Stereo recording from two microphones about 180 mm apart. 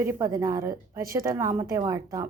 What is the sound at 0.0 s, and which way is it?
A woman's voice, 15° right (ahead or behind).